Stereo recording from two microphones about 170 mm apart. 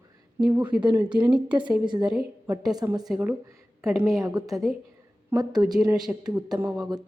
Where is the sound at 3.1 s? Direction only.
10° right (ahead or behind).